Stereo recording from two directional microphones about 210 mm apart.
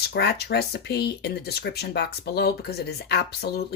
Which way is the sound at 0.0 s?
50° left (ahead or behind).